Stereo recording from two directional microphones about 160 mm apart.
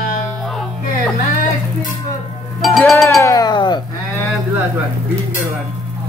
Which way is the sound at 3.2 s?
20° left (ahead or behind).